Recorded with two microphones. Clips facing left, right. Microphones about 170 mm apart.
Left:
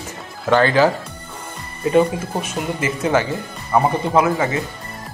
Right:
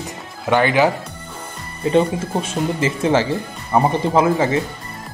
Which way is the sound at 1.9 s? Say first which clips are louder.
Even; 30° right (ahead or behind).